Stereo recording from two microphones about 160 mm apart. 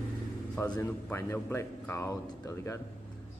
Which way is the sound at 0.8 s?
15° left (ahead or behind).